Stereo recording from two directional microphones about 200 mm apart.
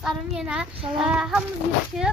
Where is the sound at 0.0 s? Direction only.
5° right (ahead or behind).